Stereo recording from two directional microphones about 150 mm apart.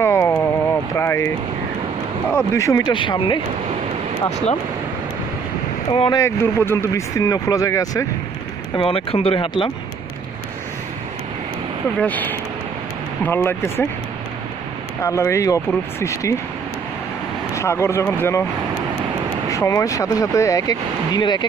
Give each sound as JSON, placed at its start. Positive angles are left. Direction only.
{"t": 0.0, "sound": "a sound", "side_deg": 20}
{"t": 0.9, "sound": "vehicle", "side_deg": 20}
{"t": 2.3, "sound": "speech", "side_deg": 20}
{"t": 5.9, "sound": "speech", "side_deg": 35}
{"t": 6.1, "sound": "speech", "side_deg": 15}
{"t": 8.7, "sound": "speech", "side_deg": 35}
{"t": 12.0, "sound": "speech", "side_deg": 10}
{"t": 15.0, "sound": "speech", "side_deg": 20}
{"t": 17.6, "sound": "speech", "side_deg": 20}
{"t": 19.5, "sound": "speech", "side_deg": 20}